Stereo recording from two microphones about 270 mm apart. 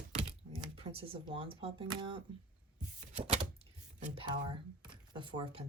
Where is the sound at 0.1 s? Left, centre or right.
Right.